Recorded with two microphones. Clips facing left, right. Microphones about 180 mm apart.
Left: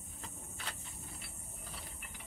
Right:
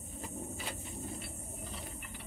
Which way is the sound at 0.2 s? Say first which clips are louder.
Right 8 dB; 5° right (ahead or behind).